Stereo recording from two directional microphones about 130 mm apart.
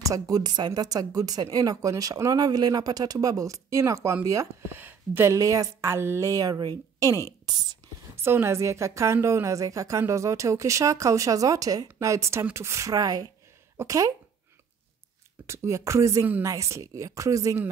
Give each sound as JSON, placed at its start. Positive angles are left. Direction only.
{"t": 0.0, "sound": "a woman's voice", "side_deg": -25}
{"t": 8.2, "sound": "a woman's voice", "side_deg": -20}
{"t": 15.4, "sound": "a woman's voice", "side_deg": -20}